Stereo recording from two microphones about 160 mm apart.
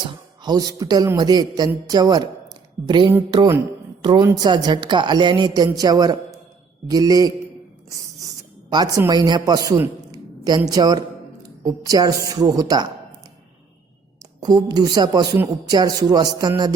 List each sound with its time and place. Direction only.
0.4 s a woman's voice: 25° right (ahead or behind)
4.4 s speech: 25° right (ahead or behind)
7.9 s a sound: 20° right (ahead or behind)
8.7 s a woman's voice: 25° right (ahead or behind)
14.4 s speech: 25° right (ahead or behind)